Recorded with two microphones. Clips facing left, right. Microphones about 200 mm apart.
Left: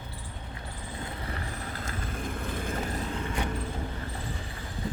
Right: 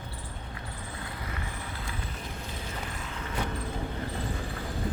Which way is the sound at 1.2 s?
35° left (ahead or behind).